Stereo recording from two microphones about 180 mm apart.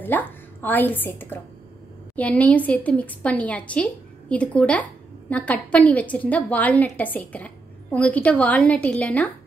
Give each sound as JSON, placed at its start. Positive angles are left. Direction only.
{"t": 0.0, "sound": "a woman's voice", "side_deg": 10}